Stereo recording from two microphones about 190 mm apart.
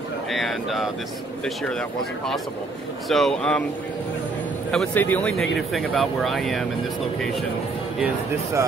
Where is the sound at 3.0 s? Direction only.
Centre (ahead or behind).